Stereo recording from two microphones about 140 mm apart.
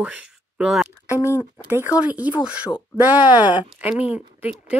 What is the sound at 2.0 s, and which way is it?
Speech, 10° right (ahead or behind).